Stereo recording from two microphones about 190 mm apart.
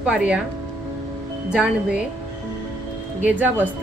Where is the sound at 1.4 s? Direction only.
5° right (ahead or behind).